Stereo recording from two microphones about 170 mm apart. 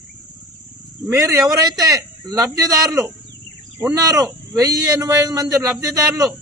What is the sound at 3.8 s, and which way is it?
A man's voice, 20° right (ahead or behind).